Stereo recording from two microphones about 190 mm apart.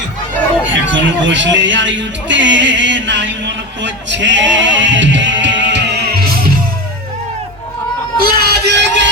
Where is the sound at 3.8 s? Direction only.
70° right (ahead or behind).